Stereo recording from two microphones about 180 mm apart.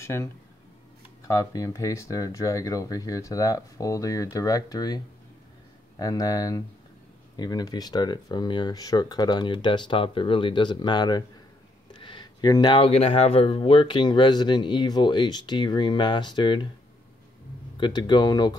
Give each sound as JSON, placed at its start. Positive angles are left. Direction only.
{"t": 0.0, "sound": "speech", "side_deg": 15}
{"t": 17.7, "sound": "speech", "side_deg": 25}